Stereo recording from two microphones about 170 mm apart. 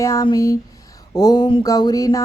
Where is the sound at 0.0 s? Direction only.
20° left (ahead or behind).